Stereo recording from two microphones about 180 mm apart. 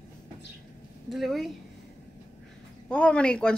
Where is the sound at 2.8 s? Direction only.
5° left (ahead or behind).